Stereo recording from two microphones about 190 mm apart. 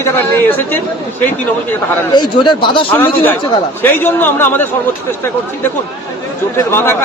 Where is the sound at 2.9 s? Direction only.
10° left (ahead or behind).